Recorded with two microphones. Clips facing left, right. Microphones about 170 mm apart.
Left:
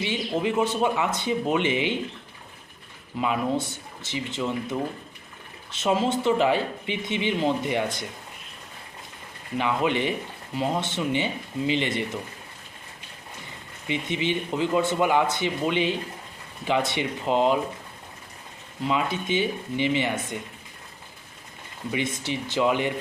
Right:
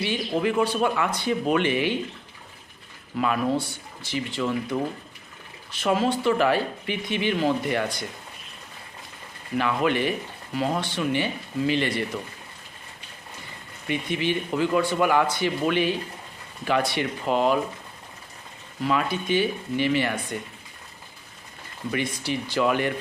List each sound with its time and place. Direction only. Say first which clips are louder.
0.0 s speech: right 1 dB; 20° left (ahead or behind)
3.2 s speech: right 1 dB; 20° left (ahead or behind)
5.7 s speech: even; 25° left (ahead or behind)
9.6 s speech: right 1 dB; 20° left (ahead or behind)
13.8 s speech: right 1 dB; 20° left (ahead or behind)
18.8 s speech: right 1 dB; 20° left (ahead or behind)
21.9 s speech: right 1 dB; 20° left (ahead or behind)